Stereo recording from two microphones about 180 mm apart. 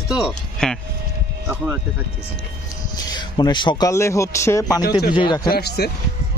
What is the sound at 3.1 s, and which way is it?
A man's voice, 25° left (ahead or behind).